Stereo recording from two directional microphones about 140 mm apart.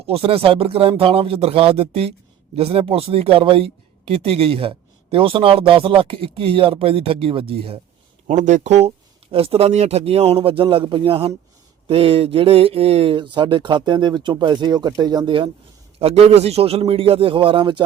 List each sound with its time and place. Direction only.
0.1 s speech: 45° right (ahead or behind)
8.3 s speech: 60° right (ahead or behind); by 17.8 s 35° right (ahead or behind)